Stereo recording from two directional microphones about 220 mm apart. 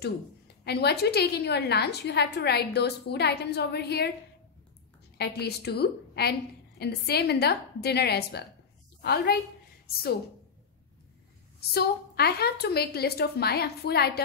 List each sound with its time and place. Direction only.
0.7 s a woman's voice: 45° left (ahead or behind)
5.1 s a woman's voice: 50° left (ahead or behind)
11.7 s a woman's voice: 45° left (ahead or behind)